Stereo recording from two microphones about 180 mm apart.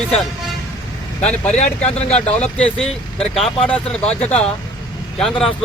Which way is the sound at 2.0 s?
35° left (ahead or behind).